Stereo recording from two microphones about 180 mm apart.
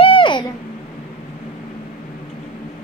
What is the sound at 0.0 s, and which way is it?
Babbling, 30° left (ahead or behind).